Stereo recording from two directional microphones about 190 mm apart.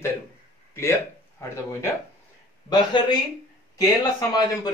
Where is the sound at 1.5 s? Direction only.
15° left (ahead or behind).